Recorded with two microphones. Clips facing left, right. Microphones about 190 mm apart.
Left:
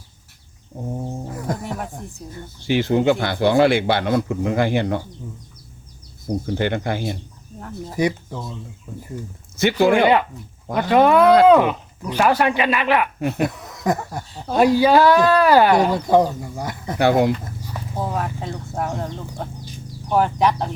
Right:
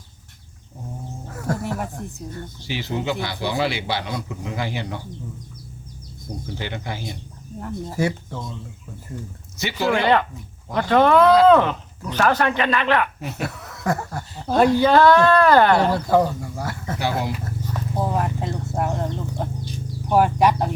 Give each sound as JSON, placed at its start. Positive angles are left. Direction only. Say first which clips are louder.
{"t": 1.5, "sound": "speech", "louder": "right 1 dB", "side_deg": 15}
{"t": 2.6, "sound": "speech", "louder": "left 9 dB", "side_deg": 55}
{"t": 6.2, "sound": "speech", "louder": "left 10 dB", "side_deg": 60}
{"t": 7.9, "sound": "speech", "louder": "left 4 dB", "side_deg": 15}
{"t": 9.6, "sound": "speech", "louder": "left 6 dB", "side_deg": 55}
{"t": 10.8, "sound": "speech", "louder": "left 1 dB", "side_deg": 15}
{"t": 17.0, "sound": "speech", "louder": "left 9 dB", "side_deg": 60}
{"t": 17.4, "sound": "horse", "louder": "right 3 dB", "side_deg": 10}
{"t": 18.0, "sound": "speech", "louder": "right 1 dB", "side_deg": 0}